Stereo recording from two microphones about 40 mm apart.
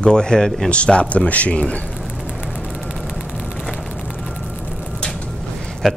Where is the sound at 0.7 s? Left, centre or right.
Left.